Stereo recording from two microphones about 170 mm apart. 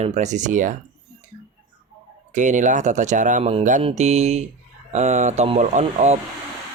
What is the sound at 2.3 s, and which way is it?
Speech, 45° right (ahead or behind).